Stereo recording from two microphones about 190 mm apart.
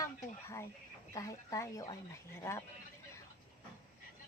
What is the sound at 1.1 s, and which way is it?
A woman's voice, 15° left (ahead or behind).